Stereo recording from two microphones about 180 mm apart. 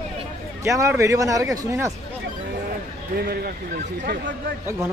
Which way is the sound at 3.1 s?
60° right (ahead or behind).